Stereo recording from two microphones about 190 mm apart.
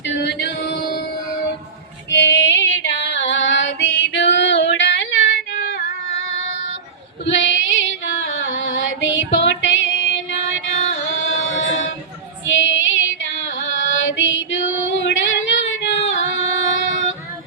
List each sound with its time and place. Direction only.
0.0 s music: 65° left (ahead or behind)
2.0 s female singing: 70° left (ahead or behind)
7.3 s female singing: 85° left
10.2 s music: 90° left
12.5 s female singing: 90° left